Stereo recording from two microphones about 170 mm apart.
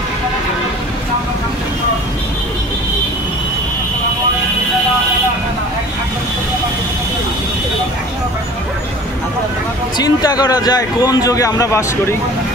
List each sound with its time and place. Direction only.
9.9 s a man's voice: 20° left (ahead or behind)